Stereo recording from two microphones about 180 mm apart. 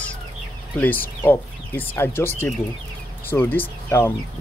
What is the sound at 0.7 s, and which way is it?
Speech, 10° left (ahead or behind).